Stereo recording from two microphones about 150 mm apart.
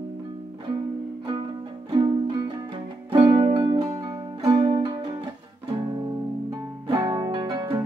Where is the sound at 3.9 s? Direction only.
25° right (ahead or behind).